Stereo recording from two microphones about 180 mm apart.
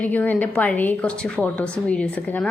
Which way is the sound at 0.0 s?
10° left (ahead or behind).